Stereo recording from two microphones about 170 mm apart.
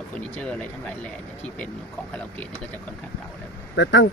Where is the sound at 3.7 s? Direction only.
90° left.